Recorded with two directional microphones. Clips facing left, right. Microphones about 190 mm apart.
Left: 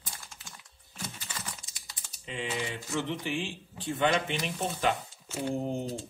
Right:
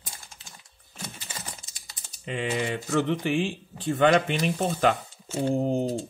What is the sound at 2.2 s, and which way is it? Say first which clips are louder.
Speech: right 6 dB; 60° right (ahead or behind).